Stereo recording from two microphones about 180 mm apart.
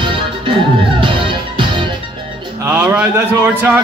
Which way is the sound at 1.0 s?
30° right (ahead or behind).